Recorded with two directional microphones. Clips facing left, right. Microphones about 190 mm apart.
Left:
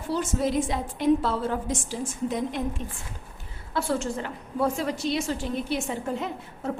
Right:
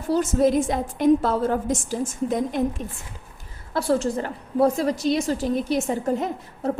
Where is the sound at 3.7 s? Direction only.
35° right (ahead or behind).